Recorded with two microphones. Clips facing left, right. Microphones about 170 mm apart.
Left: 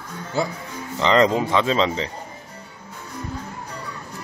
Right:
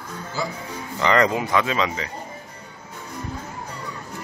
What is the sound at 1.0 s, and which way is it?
Speech, 20° left (ahead or behind).